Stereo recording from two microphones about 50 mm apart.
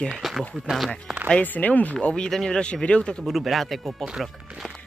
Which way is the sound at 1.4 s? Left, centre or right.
Left.